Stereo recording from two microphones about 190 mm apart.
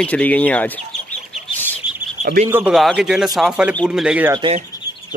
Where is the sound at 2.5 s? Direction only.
5° right (ahead or behind).